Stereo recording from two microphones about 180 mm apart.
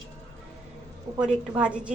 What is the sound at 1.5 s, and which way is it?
Speech, 5° right (ahead or behind).